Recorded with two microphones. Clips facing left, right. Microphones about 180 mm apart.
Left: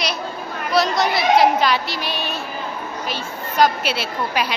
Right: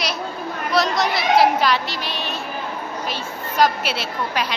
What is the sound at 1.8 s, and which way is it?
A woman's voice, 10° left (ahead or behind).